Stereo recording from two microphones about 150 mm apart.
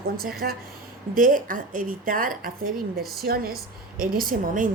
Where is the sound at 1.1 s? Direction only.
65° right (ahead or behind).